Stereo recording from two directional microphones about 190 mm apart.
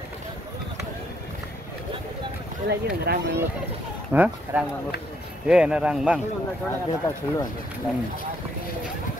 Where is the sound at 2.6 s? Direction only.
60° right (ahead or behind).